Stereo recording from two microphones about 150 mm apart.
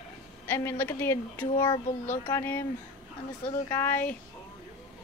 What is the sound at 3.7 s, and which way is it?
Speech, 15° left (ahead or behind).